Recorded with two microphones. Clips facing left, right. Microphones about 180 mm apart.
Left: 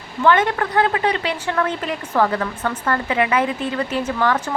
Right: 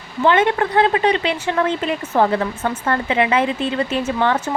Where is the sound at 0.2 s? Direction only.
20° right (ahead or behind).